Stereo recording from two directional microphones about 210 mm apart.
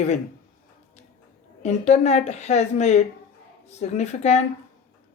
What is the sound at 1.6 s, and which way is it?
A woman's voice, 30° left (ahead or behind).